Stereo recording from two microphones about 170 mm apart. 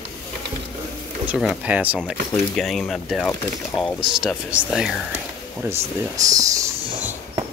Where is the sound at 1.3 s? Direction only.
5° right (ahead or behind).